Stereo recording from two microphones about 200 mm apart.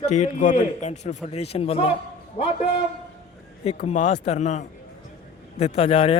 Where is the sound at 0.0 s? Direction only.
35° left (ahead or behind).